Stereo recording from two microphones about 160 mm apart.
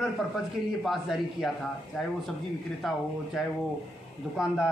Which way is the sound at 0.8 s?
Centre (ahead or behind).